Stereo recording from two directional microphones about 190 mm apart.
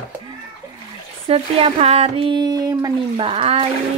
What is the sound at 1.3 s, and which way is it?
Speech, 30° right (ahead or behind).